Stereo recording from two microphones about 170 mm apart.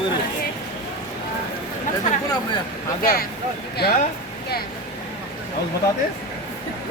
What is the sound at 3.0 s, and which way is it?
Speech, 60° left (ahead or behind).